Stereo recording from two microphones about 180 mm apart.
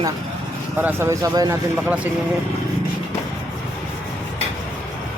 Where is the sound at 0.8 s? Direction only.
10° right (ahead or behind).